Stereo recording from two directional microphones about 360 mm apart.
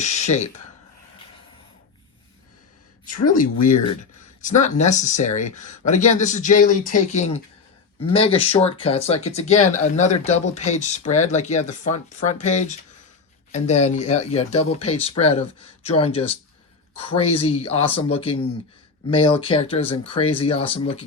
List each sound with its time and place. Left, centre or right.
0.0 s speech: centre
3.3 s speech: left
4.4 s speech: centre